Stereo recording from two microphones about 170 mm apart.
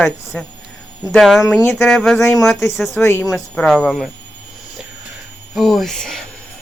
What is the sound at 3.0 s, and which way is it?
Speech, 15° left (ahead or behind).